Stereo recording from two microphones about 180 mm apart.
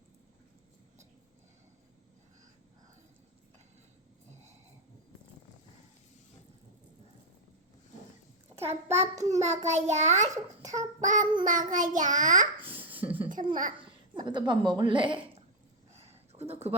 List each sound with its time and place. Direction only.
8.6 s a child's voice: 35° right (ahead or behind)
10.7 s child singing: 45° right (ahead or behind)
12.9 s a sound: 10° right (ahead or behind)
13.5 s child singing: 45° right (ahead or behind)
14.3 s a woman's voice: 25° right (ahead or behind)
15.9 s a sound: 35° right (ahead or behind)